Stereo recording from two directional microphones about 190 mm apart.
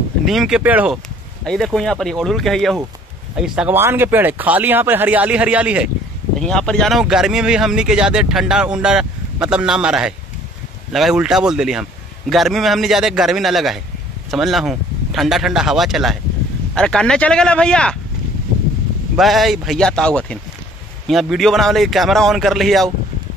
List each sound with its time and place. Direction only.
0.2 s speech: centre (ahead or behind)
1.4 s speech: 5° left (ahead or behind)
6.4 s speech: 5° left (ahead or behind)
19.1 s speech: centre (ahead or behind)